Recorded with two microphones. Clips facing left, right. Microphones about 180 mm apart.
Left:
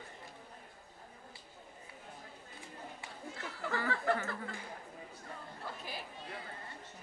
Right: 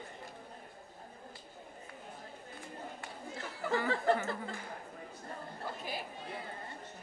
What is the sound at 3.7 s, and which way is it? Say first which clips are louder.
Speech: right 4 dB; 25° right (ahead or behind).